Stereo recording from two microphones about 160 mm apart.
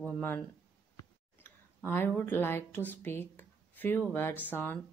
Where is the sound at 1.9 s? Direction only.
10° left (ahead or behind).